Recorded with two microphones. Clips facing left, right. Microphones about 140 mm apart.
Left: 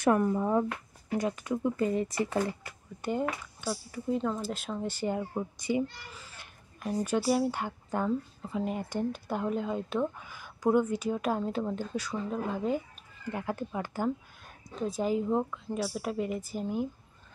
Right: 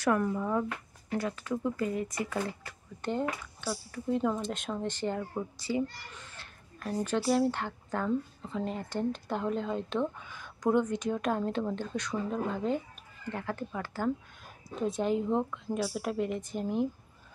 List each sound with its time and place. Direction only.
0.0 s speech: 20° left (ahead or behind)
2.6 s speech: 10° left (ahead or behind)
6.0 s children playing: 5° left (ahead or behind)
6.8 s speech: 15° left (ahead or behind)
14.4 s a woman's voice: centre (ahead or behind)